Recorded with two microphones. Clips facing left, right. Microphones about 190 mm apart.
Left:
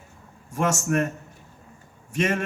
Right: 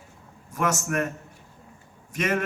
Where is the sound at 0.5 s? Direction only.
30° left (ahead or behind).